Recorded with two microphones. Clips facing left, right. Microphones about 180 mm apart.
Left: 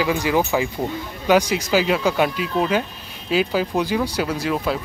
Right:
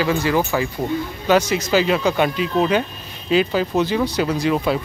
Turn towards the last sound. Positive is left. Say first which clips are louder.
# right 3 dB
turn(degrees=0)  # may be behind; listen again after turning